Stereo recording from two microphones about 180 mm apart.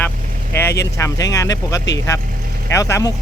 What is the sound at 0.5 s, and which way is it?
Speech, 15° left (ahead or behind).